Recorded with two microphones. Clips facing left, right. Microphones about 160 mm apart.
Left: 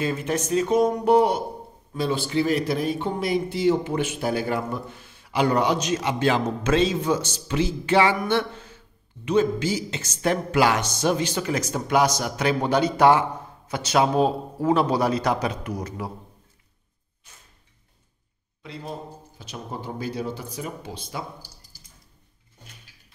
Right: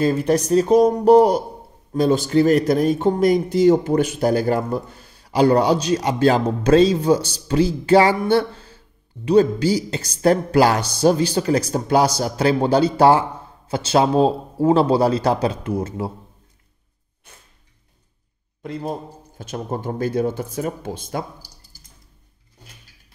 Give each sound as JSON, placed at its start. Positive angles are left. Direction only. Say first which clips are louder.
{"t": 0.0, "sound": "a man's voice", "louder": "right 8 dB", "side_deg": -35}
{"t": 18.6, "sound": "speech", "louder": "right 8 dB", "side_deg": -50}